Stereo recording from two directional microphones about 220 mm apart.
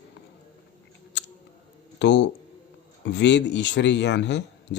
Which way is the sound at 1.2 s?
55° left (ahead or behind).